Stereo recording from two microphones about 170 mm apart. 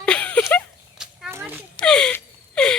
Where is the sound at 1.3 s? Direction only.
10° right (ahead or behind).